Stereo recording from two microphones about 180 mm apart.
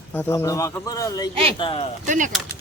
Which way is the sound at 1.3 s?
30° right (ahead or behind).